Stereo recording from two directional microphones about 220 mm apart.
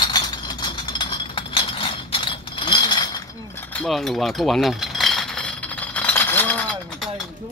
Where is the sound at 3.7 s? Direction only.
5° left (ahead or behind).